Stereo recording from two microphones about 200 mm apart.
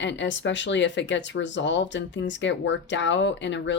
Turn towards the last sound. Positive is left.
turn(degrees=65)  # may be behind; listen again after turning